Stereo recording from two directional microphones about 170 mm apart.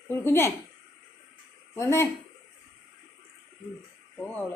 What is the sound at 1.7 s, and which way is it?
Speech, 15° left (ahead or behind).